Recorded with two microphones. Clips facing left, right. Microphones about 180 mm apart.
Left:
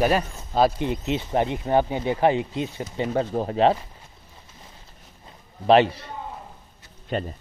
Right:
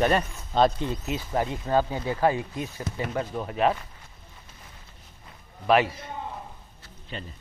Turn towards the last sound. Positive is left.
turn(degrees=50)  # may be behind; listen again after turning